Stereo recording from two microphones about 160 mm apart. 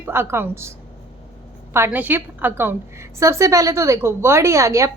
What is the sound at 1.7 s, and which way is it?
A woman's voice, 15° right (ahead or behind).